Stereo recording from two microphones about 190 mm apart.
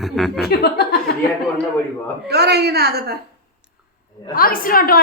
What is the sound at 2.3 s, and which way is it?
Speech, 60° right (ahead or behind).